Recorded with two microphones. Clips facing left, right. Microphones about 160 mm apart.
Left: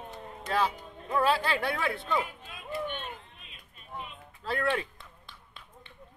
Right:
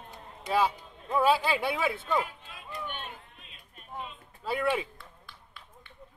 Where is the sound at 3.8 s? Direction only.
45° right (ahead or behind).